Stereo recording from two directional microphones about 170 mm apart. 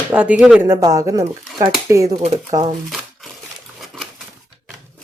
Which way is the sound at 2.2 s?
35° right (ahead or behind).